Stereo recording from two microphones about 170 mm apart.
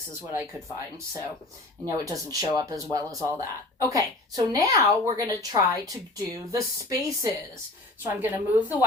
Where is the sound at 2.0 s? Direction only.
20° right (ahead or behind).